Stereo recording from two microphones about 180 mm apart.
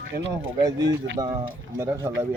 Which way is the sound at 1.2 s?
20° right (ahead or behind).